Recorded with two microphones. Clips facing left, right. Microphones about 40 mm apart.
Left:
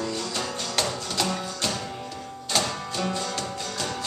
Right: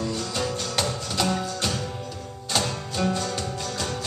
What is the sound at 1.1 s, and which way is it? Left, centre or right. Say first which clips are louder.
Music: right 2 dB; centre.